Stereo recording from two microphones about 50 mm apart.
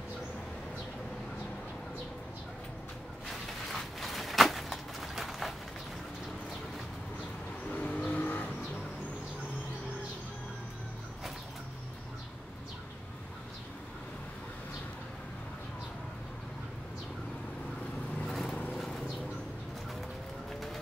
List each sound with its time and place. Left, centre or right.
3.3 s a sound: centre
7.7 s vehicle: left
18.2 s vehicle: centre